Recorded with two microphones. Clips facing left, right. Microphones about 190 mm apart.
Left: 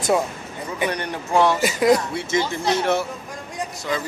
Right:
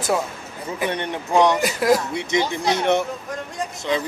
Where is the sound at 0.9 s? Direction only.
25° right (ahead or behind).